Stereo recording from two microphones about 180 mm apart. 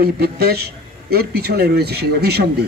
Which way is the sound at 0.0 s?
60° right (ahead or behind).